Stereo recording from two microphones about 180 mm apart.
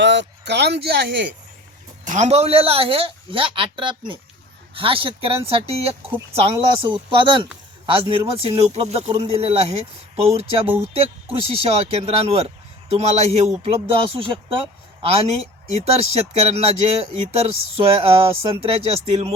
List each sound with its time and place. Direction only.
0.0 s speech: 75° right (ahead or behind)
2.0 s speech: 40° right (ahead or behind)